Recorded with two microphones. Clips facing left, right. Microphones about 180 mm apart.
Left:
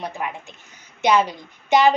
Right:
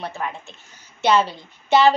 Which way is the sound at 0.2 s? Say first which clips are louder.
Even; 15° left (ahead or behind).